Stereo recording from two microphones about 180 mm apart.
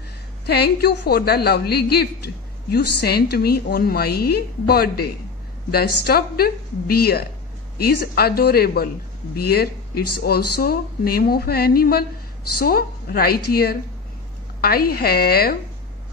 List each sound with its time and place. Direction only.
0.5 s a man's voice: 65° left (ahead or behind)